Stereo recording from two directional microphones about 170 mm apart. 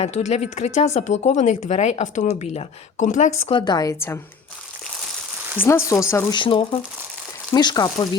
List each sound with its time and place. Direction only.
0.0 s speech: 40° left (ahead or behind)
3.5 s a woman's voice: 25° left (ahead or behind)
5.5 s speech: 15° left (ahead or behind)
6.3 s a woman's voice: 30° left (ahead or behind)